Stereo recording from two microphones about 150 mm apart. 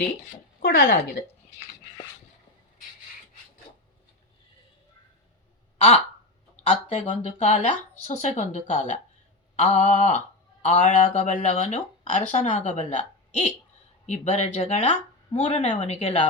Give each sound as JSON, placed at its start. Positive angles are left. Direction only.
{"t": 0.6, "sound": "speech", "side_deg": 75}
{"t": 5.7, "sound": "a sound", "side_deg": 45}
{"t": 6.7, "sound": "speech", "side_deg": 45}